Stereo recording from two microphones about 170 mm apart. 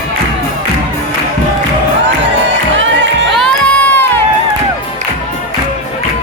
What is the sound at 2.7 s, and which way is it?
Music, 90° right.